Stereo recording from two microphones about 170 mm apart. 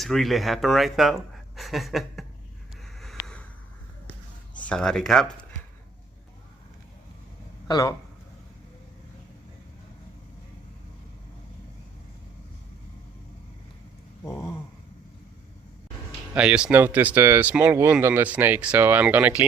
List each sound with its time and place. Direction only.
0.0 s speech: centre (ahead or behind)
3.0 s a sound: centre (ahead or behind)
4.5 s speech: 5° left (ahead or behind)
7.7 s speech: 20° left (ahead or behind)
16.3 s speech: 5° right (ahead or behind)